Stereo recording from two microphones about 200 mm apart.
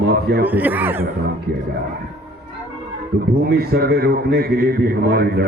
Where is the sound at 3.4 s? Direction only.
50° right (ahead or behind).